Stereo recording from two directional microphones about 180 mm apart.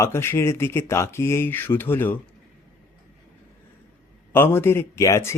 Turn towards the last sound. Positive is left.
turn(degrees=15)  # may be behind; listen again after turning